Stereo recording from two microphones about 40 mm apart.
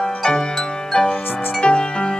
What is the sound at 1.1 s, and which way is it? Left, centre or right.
Music, left.